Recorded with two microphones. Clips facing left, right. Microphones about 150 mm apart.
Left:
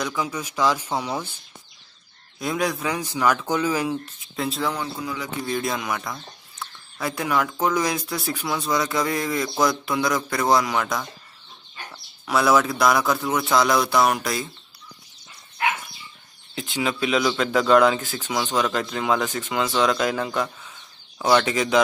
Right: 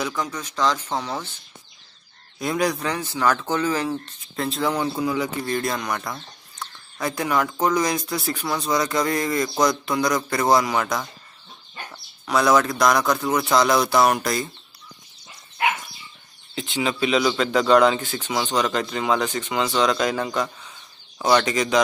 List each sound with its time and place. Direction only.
0.0 s speech: 5° left (ahead or behind)
2.3 s speech: centre (ahead or behind)
4.4 s speech: centre (ahead or behind)
5.0 s speech: 40° right (ahead or behind)
5.4 s speech: centre (ahead or behind)
12.3 s speech: 5° left (ahead or behind)
16.5 s speech: centre (ahead or behind)